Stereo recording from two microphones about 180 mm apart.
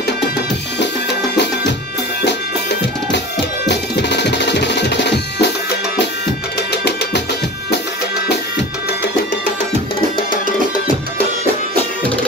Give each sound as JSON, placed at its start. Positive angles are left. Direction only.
{"t": 3.6, "sound": "music", "side_deg": 70}